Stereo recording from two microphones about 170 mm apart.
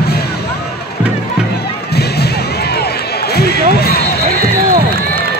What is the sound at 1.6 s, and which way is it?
Music, 70° left (ahead or behind).